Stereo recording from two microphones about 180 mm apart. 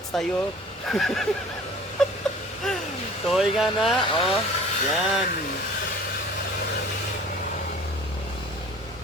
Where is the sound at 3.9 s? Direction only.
30° left (ahead or behind).